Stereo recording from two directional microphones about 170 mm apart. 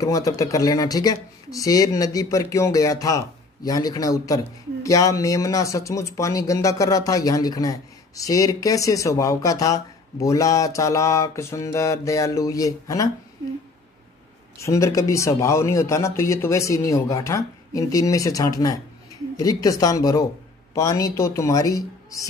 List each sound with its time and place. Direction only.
0.0 s speech: 20° left (ahead or behind)
14.6 s speech: 15° left (ahead or behind)